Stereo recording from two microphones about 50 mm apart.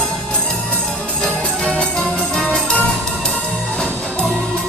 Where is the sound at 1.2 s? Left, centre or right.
Centre.